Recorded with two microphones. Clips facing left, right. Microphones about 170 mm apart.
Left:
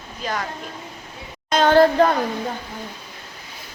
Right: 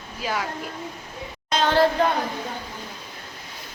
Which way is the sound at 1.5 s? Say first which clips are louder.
Left 5 dB; 50° left (ahead or behind).